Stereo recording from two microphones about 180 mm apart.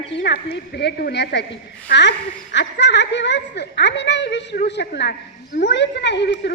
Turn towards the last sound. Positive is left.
turn(degrees=70)  # may be behind; listen again after turning